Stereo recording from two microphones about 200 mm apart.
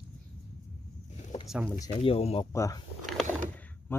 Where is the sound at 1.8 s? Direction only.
25° left (ahead or behind).